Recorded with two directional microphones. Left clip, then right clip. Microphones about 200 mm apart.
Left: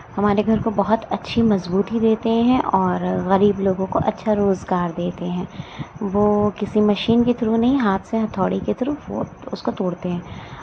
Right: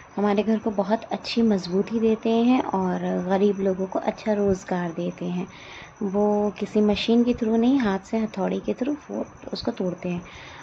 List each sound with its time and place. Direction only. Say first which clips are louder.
0.1 s speech: left 4 dB; 5° left (ahead or behind)
6.1 s speech: left 4 dB; 20° left (ahead or behind)
6.6 s speech: left 3 dB; 5° left (ahead or behind)